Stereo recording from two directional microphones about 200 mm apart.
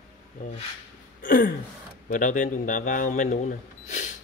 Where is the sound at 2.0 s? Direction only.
40° left (ahead or behind).